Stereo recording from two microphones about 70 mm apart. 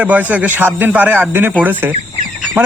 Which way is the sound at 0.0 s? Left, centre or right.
Right.